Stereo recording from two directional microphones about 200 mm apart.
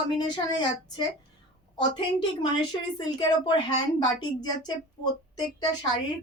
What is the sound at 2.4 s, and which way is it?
A woman's voice, 20° left (ahead or behind).